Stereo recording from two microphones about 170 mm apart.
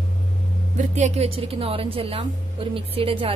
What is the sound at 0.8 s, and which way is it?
Speech, 45° right (ahead or behind).